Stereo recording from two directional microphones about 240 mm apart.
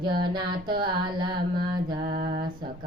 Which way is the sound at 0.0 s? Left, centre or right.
Centre.